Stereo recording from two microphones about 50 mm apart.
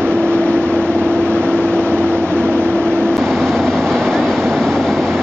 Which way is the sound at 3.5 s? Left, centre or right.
Centre.